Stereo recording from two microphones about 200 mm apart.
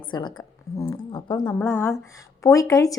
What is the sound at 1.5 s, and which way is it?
A woman's voice, 10° left (ahead or behind).